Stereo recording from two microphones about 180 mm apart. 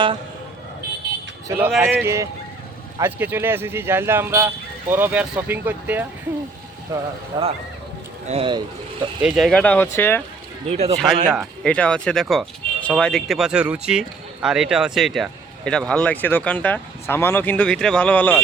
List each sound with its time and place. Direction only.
1.5 s speech: 10° right (ahead or behind)
6.9 s speech: 30° right (ahead or behind)
9.2 s speech: centre (ahead or behind)
10.7 s speech: 35° right (ahead or behind)
10.9 s speech: centre (ahead or behind)